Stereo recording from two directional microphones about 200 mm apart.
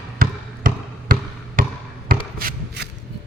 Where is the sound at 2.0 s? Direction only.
50° right (ahead or behind).